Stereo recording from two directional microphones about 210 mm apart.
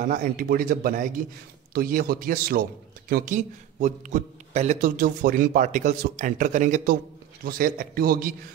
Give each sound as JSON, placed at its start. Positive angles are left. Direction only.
{"t": 0.0, "sound": "a man's voice", "side_deg": -40}